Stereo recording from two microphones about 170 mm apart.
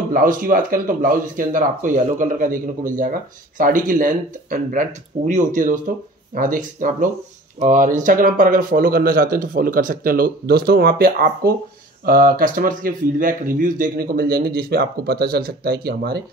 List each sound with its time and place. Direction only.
0.1 s speech: 55° right (ahead or behind)